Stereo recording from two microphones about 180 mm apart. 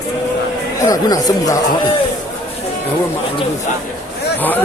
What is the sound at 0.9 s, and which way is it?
Speech, 20° left (ahead or behind).